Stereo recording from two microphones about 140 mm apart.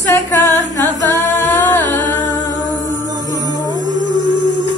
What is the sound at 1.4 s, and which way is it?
Music, 15° left (ahead or behind).